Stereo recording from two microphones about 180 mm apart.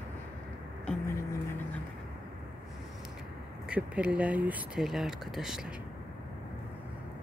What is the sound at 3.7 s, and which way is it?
Speech, 5° right (ahead or behind).